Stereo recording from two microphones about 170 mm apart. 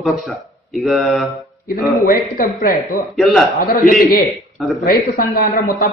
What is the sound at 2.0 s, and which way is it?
Speech, 55° left (ahead or behind).